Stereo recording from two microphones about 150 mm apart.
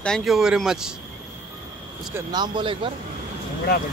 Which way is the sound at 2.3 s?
30° right (ahead or behind).